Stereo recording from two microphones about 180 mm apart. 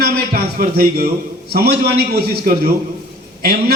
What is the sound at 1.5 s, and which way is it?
Speech, 60° right (ahead or behind).